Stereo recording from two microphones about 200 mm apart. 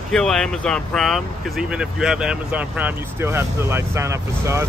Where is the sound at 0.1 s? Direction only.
5° left (ahead or behind).